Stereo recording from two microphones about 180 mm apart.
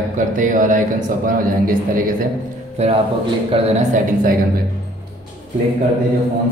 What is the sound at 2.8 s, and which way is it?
Speech, 35° right (ahead or behind).